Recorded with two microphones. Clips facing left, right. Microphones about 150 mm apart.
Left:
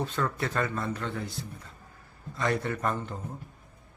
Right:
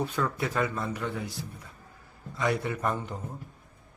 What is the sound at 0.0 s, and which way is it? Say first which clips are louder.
A man's voice: right 1 dB; 10° right (ahead or behind).